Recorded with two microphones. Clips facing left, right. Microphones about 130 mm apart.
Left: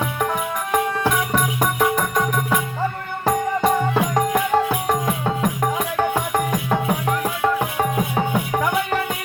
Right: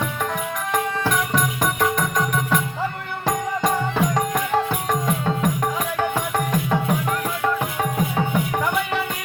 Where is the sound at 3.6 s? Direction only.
25° left (ahead or behind).